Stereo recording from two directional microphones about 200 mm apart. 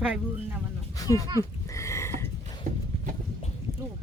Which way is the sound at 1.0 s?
15° left (ahead or behind).